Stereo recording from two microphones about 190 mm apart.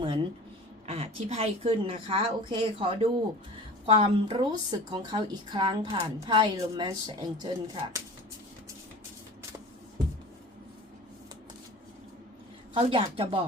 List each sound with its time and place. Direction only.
0.0 s a woman's voice: 30° right (ahead or behind)
12.7 s a woman's voice: 30° right (ahead or behind)